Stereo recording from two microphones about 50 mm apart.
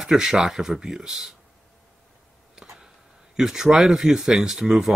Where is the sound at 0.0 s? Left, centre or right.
Centre.